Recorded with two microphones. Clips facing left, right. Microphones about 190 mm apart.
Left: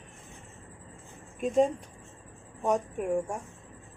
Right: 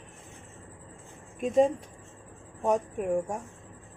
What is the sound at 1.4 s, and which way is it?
Speech, centre (ahead or behind).